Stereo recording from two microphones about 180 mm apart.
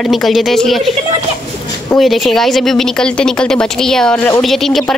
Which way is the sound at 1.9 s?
Centre (ahead or behind).